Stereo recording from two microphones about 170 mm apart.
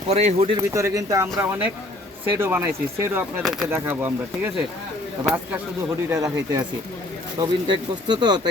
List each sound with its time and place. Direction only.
0.1 s speech: 40° right (ahead or behind)
0.5 s speech: 15° right (ahead or behind)
3.7 s speech: 15° right (ahead or behind)
6.1 s speech: 20° right (ahead or behind)